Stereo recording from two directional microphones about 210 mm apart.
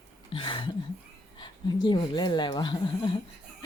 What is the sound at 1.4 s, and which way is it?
Speech, 20° left (ahead or behind).